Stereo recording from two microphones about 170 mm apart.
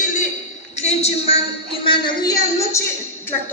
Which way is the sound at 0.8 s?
40° left (ahead or behind).